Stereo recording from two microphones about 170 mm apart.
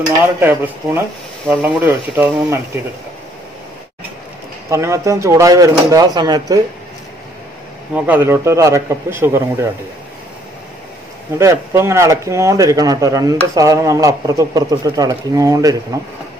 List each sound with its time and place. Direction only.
0.4 s a man's voice: 15° right (ahead or behind)
4.6 s speech: 15° right (ahead or behind)
7.9 s a man's voice: 10° right (ahead or behind)
11.3 s speech: 15° right (ahead or behind)